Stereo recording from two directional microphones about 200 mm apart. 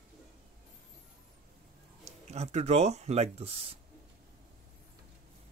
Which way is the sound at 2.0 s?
35° right (ahead or behind).